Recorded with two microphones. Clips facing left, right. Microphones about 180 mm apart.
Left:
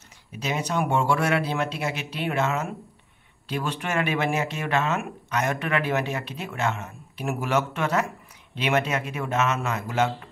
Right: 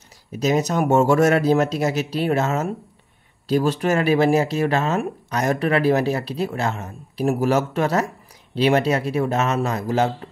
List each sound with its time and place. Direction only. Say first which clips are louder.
0.3 s speech: right 8 dB; 40° right (ahead or behind)